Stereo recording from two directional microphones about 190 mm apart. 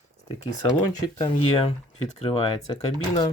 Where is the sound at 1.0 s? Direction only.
25° left (ahead or behind).